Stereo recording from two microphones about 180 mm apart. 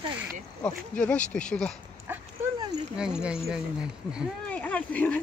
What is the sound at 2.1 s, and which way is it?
Dog, 10° right (ahead or behind).